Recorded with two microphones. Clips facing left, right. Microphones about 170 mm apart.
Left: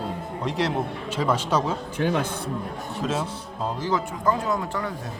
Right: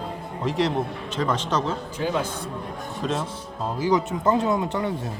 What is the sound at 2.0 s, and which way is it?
Speech, 60° left (ahead or behind).